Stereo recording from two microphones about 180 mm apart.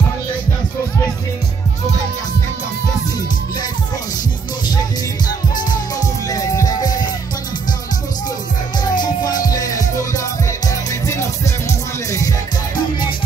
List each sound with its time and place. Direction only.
5.7 s music: 20° left (ahead or behind)
8.8 s music: 20° left (ahead or behind)